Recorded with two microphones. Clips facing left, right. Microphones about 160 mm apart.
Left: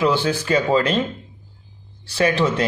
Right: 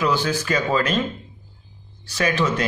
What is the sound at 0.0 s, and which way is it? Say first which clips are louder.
Speech: left 2 dB; 30° left (ahead or behind).